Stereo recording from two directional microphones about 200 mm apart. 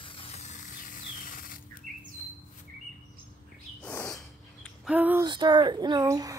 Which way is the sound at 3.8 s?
5° left (ahead or behind).